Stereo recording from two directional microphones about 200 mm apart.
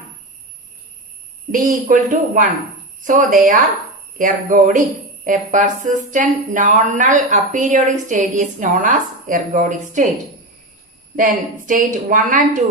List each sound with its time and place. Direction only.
1.5 s speech: 40° right (ahead or behind)
11.2 s speech: 40° right (ahead or behind)